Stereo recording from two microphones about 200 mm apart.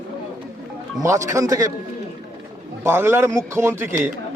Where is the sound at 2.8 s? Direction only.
10° right (ahead or behind).